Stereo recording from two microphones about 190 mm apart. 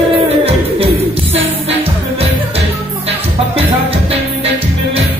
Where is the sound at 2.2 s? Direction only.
30° right (ahead or behind).